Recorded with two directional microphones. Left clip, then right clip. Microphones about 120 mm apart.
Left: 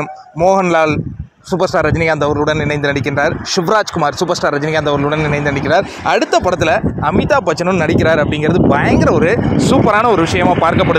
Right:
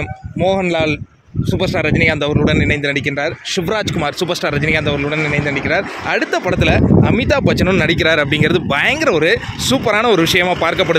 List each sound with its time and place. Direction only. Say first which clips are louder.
0.5 s speech: left 4 dB; 5° left (ahead or behind)
4.2 s speech: left 3 dB; centre (ahead or behind)
5.1 s a man's voice: left 2 dB; 90° left
6.0 s speech: left 5 dB; 30° left (ahead or behind)
6.4 s speech: left 2 dB; 15° left (ahead or behind)
7.0 s speech: left 1 dB; 20° right (ahead or behind)
7.6 s speech: left 1 dB; 30° right (ahead or behind)